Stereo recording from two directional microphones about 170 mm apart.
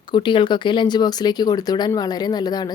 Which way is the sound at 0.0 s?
25° left (ahead or behind).